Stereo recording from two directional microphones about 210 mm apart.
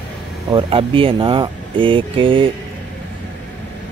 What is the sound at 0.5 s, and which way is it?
Speech, 25° right (ahead or behind).